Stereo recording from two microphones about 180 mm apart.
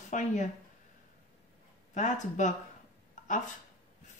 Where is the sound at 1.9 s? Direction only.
45° left (ahead or behind).